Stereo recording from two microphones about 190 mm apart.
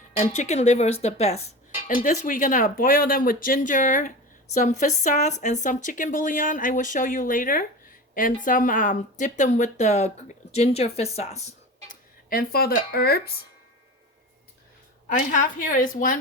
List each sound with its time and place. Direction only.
0.2 s speech: 35° left (ahead or behind)
1.9 s speech: 45° left (ahead or behind)
15.1 s speech: 45° left (ahead or behind)